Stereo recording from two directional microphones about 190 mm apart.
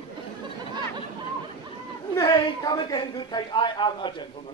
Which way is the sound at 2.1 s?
20° left (ahead or behind).